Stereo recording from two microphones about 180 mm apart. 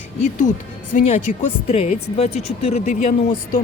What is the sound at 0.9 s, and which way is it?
Speech, 45° left (ahead or behind).